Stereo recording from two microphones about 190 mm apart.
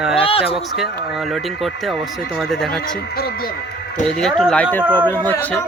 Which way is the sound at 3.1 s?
55° left (ahead or behind).